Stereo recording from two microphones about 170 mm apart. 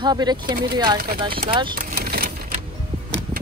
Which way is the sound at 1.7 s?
60° right (ahead or behind).